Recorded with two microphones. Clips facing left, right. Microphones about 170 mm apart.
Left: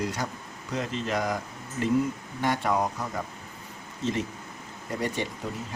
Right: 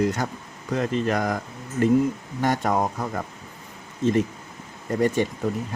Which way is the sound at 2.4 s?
45° right (ahead or behind).